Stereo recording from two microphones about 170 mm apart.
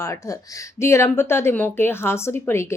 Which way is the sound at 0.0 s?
20° left (ahead or behind).